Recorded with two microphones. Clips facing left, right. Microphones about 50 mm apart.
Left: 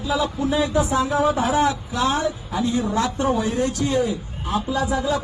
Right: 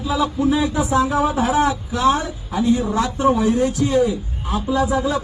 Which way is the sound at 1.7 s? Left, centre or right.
Right.